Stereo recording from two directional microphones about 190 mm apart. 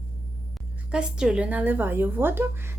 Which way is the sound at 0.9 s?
5° right (ahead or behind).